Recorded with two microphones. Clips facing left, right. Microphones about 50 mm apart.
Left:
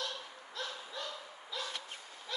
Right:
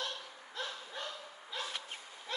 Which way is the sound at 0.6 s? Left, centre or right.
Right.